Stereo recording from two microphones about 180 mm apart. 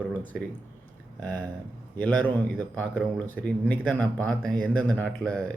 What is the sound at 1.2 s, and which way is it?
Speech, 20° right (ahead or behind).